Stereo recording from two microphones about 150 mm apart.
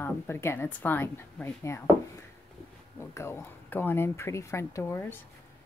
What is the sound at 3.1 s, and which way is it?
Speech, 15° left (ahead or behind).